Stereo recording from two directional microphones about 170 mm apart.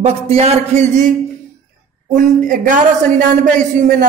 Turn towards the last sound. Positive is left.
turn(degrees=-50)  # may be behind; listen again after turning